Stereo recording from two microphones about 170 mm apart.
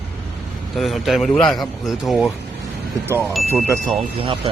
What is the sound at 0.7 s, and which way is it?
Speech, centre (ahead or behind).